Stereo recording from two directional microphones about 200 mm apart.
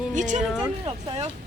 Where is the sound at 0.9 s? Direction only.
30° right (ahead or behind).